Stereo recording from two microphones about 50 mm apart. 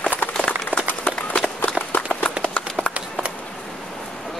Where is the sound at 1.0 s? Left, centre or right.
Left.